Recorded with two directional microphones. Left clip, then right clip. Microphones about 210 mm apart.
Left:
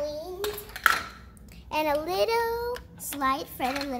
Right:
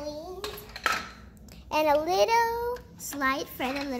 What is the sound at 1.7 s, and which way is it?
A child's voice, 10° right (ahead or behind).